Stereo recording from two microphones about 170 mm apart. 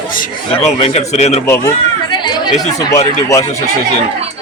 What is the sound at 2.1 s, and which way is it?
Chatter, 25° left (ahead or behind).